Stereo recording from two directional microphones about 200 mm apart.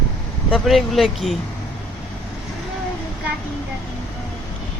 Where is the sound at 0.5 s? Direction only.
Centre (ahead or behind).